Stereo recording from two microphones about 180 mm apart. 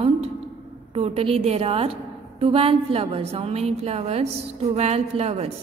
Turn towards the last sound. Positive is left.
turn(degrees=-35)  # may be behind; listen again after turning